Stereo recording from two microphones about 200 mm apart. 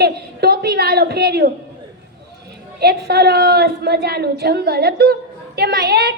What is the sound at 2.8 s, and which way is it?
A woman's voice, 55° right (ahead or behind).